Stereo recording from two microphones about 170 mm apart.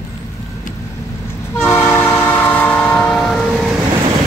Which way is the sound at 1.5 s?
15° left (ahead or behind).